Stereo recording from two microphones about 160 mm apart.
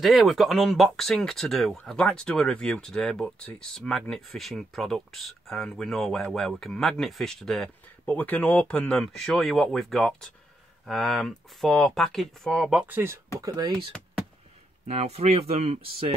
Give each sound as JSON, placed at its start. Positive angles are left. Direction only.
{"t": 0.0, "sound": "speech", "side_deg": 0}
{"t": 13.9, "sound": "speech", "side_deg": 5}
{"t": 14.9, "sound": "speech", "side_deg": -40}